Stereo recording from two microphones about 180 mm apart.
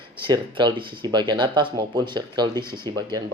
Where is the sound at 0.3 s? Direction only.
25° right (ahead or behind).